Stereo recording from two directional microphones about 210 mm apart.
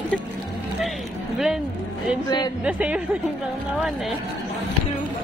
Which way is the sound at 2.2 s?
20° left (ahead or behind).